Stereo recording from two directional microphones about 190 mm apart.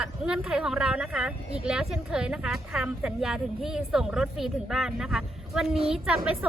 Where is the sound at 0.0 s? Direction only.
5° right (ahead or behind).